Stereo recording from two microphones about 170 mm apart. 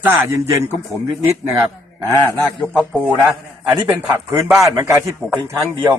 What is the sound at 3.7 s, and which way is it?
A man's voice, 10° right (ahead or behind).